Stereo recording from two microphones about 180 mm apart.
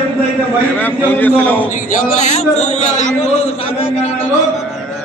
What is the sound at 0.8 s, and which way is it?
Speech, 10° left (ahead or behind).